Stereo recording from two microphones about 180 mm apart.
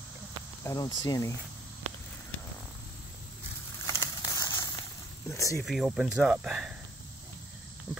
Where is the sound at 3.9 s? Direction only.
20° left (ahead or behind).